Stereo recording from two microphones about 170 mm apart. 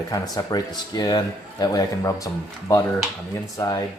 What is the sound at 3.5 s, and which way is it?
Speech, 20° left (ahead or behind).